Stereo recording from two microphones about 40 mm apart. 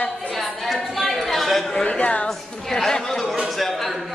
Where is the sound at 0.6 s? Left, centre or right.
Centre.